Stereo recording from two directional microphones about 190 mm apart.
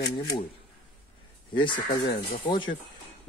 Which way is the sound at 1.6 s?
25° left (ahead or behind).